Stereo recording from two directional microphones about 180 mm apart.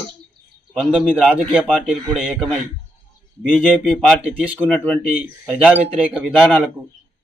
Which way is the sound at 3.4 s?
Centre (ahead or behind).